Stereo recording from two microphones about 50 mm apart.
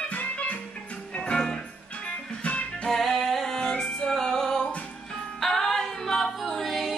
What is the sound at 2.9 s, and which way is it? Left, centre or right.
Music, centre.